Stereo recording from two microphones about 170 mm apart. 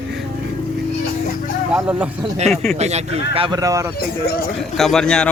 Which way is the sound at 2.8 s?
40° right (ahead or behind).